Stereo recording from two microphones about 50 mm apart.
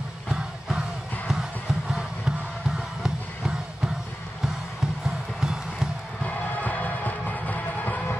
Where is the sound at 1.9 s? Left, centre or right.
Centre.